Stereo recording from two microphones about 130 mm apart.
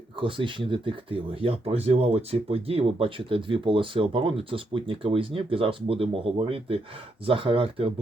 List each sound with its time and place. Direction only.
0.2 s speech: 40° right (ahead or behind)